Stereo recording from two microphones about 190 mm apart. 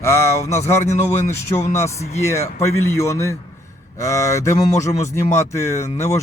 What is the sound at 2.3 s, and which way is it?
Speech, 15° left (ahead or behind).